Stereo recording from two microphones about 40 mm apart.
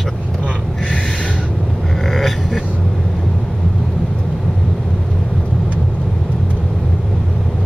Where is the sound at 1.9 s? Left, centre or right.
Centre.